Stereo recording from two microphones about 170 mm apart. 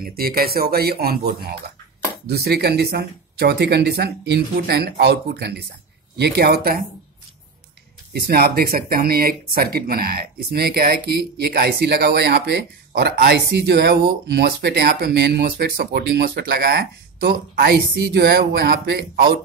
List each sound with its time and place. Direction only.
0.0 s speech: 65° right (ahead or behind)
8.1 s speech: 70° right (ahead or behind)